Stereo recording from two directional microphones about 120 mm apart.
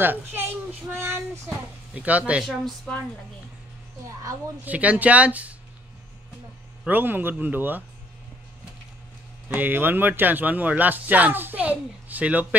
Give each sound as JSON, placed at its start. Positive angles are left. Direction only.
{"t": 0.0, "sound": "speech", "side_deg": -15}
{"t": 0.8, "sound": "child singing", "side_deg": -20}
{"t": 2.0, "sound": "speech", "side_deg": -10}
{"t": 2.6, "sound": "a woman's voice", "side_deg": 5}
{"t": 4.6, "sound": "speech", "side_deg": -10}
{"t": 6.9, "sound": "speech", "side_deg": -15}
{"t": 9.5, "sound": "speech", "side_deg": -15}